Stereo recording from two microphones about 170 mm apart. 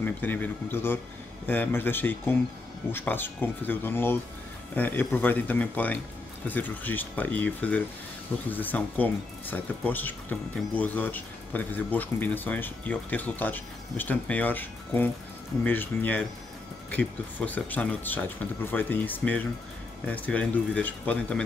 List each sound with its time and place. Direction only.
0.0 s speech: 10° left (ahead or behind)